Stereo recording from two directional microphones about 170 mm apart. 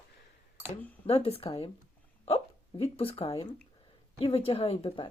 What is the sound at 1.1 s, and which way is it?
Speech, 35° left (ahead or behind).